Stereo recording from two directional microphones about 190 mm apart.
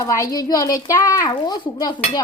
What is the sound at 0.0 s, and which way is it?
A child's voice, 15° left (ahead or behind).